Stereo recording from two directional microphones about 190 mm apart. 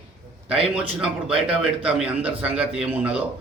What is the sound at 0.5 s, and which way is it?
Speech, 30° right (ahead or behind).